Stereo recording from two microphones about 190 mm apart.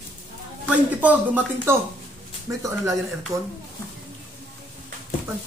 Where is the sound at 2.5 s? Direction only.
10° right (ahead or behind).